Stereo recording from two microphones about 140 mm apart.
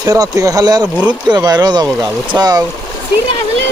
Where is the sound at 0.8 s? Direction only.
10° right (ahead or behind).